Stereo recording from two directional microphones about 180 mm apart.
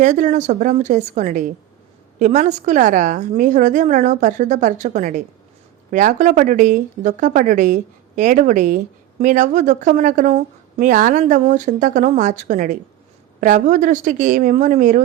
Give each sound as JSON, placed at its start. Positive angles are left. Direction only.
{"t": 0.0, "sound": "speech", "side_deg": -45}